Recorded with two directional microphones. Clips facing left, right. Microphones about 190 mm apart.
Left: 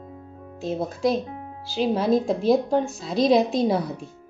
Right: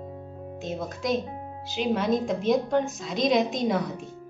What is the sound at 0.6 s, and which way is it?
A woman's voice, 30° left (ahead or behind).